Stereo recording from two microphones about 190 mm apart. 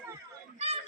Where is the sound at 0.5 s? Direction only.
30° right (ahead or behind).